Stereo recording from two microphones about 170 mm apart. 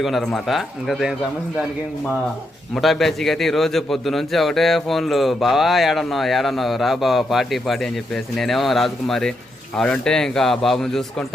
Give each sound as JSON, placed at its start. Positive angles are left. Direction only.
{"t": 0.0, "sound": "a man's voice", "side_deg": 0}
{"t": 2.7, "sound": "a man's voice", "side_deg": 0}